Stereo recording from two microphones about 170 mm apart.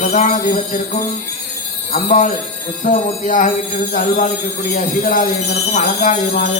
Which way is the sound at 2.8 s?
50° left (ahead or behind).